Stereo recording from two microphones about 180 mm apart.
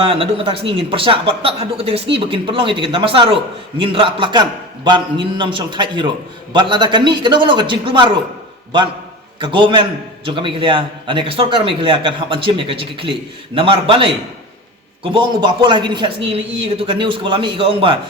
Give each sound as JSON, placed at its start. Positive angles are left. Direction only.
{"t": 0.0, "sound": "a man's voice", "side_deg": -30}
{"t": 9.4, "sound": "a man's voice", "side_deg": -25}